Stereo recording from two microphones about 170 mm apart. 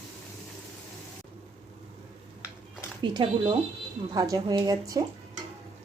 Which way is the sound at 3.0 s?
30° right (ahead or behind).